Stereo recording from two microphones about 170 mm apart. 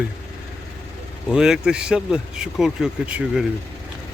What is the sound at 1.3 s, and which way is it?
Speech, 5° right (ahead or behind).